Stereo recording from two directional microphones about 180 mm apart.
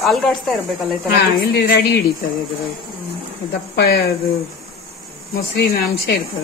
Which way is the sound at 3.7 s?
60° left (ahead or behind).